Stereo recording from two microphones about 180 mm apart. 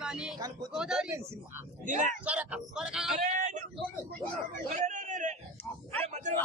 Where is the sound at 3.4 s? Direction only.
45° right (ahead or behind).